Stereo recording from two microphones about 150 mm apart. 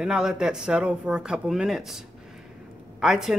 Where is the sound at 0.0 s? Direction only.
5° right (ahead or behind).